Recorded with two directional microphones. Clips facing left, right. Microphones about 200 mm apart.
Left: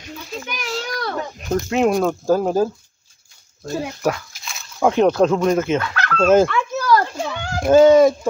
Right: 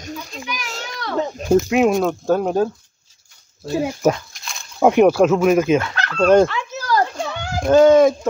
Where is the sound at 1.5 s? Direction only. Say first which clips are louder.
Right 3 dB; 5° right (ahead or behind).